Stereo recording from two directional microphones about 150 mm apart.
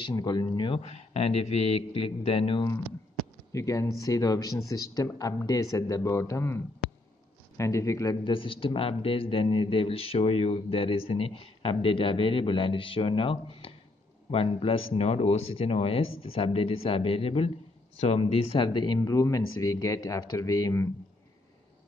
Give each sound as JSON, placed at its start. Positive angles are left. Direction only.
{"t": 0.0, "sound": "a man's voice", "side_deg": 30}
{"t": 3.5, "sound": "speech", "side_deg": 20}
{"t": 8.2, "sound": "a man's voice", "side_deg": 35}